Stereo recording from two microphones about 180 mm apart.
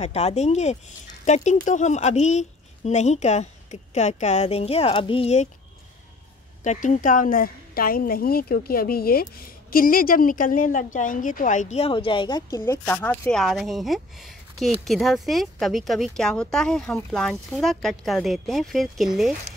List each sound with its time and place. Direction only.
0.0 s speech: 35° left (ahead or behind)
6.6 s a woman's voice: 40° left (ahead or behind); by 12.7 s 20° left (ahead or behind)
12.8 s speech: 10° left (ahead or behind)